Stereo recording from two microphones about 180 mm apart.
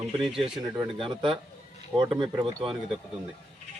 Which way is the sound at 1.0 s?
30° right (ahead or behind).